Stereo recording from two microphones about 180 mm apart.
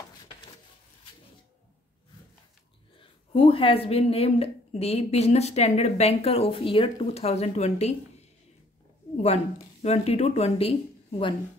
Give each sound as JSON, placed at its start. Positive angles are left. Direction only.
{"t": 3.0, "sound": "a woman's voice", "side_deg": 30}
{"t": 9.1, "sound": "speech", "side_deg": 40}